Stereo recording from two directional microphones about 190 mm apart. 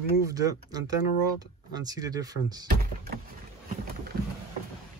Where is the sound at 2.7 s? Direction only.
55° right (ahead or behind).